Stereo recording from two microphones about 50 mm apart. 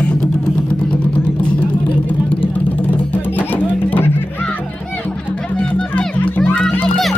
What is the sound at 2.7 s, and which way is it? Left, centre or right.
Music, left.